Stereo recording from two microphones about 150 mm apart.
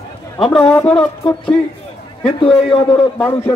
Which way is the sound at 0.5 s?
5° left (ahead or behind).